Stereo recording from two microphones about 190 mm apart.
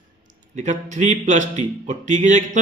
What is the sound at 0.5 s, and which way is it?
A man's voice, 40° right (ahead or behind).